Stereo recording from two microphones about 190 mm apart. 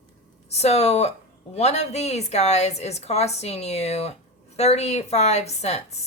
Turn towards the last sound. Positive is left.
turn(degrees=35)  # may be behind; listen again after turning